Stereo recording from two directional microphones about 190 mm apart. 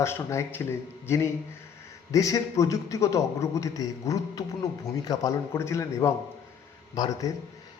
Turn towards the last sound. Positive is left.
turn(degrees=20)  # may be behind; listen again after turning